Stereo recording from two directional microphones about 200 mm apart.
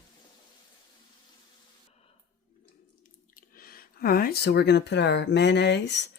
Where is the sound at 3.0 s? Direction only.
45° left (ahead or behind).